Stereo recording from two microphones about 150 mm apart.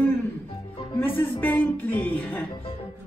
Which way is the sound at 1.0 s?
15° left (ahead or behind).